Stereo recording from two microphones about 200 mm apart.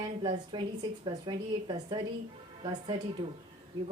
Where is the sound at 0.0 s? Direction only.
20° right (ahead or behind).